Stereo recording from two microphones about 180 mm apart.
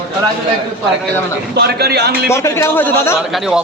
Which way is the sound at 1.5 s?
65° right (ahead or behind).